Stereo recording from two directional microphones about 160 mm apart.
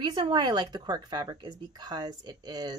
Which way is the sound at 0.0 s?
25° right (ahead or behind).